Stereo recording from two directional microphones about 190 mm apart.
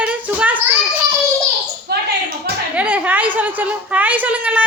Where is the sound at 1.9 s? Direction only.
55° right (ahead or behind).